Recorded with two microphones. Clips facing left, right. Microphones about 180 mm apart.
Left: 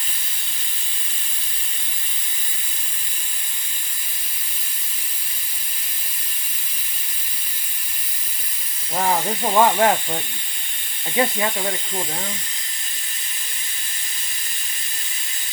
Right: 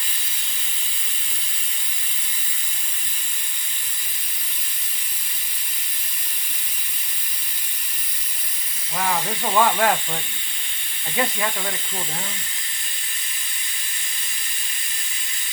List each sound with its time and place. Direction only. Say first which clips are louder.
9.0 s speech: left 3 dB; 35° left (ahead or behind)
9.6 s speech: left 3 dB; 20° left (ahead or behind)
11.2 s speech: left 4 dB; 25° left (ahead or behind)